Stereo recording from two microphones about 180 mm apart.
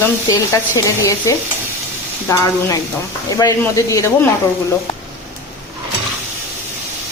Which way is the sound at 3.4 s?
20° left (ahead or behind).